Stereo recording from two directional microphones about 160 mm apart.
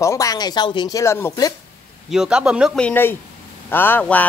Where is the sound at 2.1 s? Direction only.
5° right (ahead or behind).